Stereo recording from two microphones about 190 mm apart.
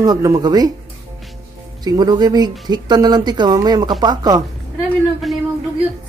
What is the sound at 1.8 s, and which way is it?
Speech, 20° right (ahead or behind).